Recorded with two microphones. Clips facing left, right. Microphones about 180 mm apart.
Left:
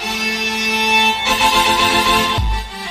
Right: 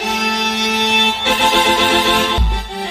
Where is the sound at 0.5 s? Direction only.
60° right (ahead or behind).